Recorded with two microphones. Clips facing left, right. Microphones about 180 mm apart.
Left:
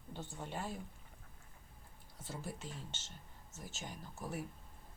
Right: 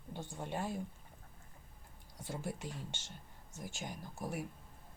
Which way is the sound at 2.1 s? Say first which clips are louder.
Right 4 dB; 15° right (ahead or behind).